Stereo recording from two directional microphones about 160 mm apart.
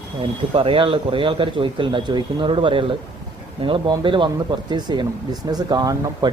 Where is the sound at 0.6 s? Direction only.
35° right (ahead or behind).